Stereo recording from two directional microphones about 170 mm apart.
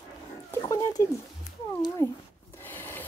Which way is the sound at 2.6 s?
10° left (ahead or behind).